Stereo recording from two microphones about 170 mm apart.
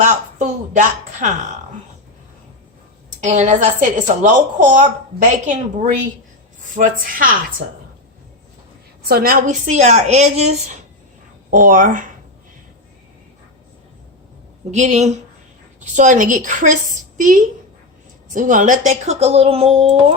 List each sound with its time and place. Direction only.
0.0 s speech: 45° right (ahead or behind)
3.2 s a woman's voice: 45° right (ahead or behind)
9.0 s speech: 60° right (ahead or behind); by 10.8 s 40° right (ahead or behind)
11.5 s a woman's voice: 50° right (ahead or behind)
14.7 s a woman's voice: 40° right (ahead or behind)